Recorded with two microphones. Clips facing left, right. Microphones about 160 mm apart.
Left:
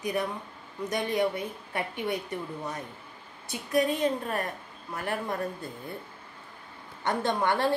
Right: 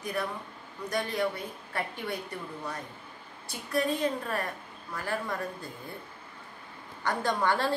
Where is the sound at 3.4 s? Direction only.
20° left (ahead or behind).